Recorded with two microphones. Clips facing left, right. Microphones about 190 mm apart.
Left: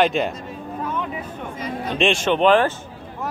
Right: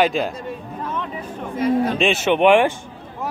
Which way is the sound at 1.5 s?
60° right (ahead or behind).